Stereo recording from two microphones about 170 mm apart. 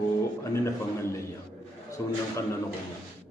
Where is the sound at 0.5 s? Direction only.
15° left (ahead or behind).